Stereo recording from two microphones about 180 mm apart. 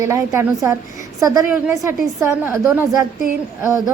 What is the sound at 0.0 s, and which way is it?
A woman's voice, 15° right (ahead or behind).